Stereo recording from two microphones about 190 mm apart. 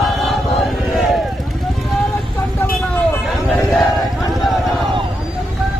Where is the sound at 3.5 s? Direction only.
Centre (ahead or behind).